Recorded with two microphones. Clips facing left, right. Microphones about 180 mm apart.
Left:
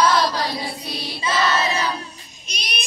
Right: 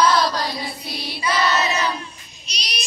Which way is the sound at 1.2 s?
25° left (ahead or behind).